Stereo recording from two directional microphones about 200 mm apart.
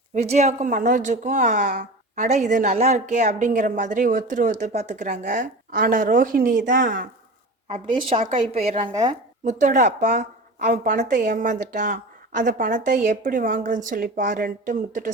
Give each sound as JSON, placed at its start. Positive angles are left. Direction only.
{"t": 0.1, "sound": "a woman's voice", "side_deg": -35}
{"t": 7.7, "sound": "a woman's voice", "side_deg": -30}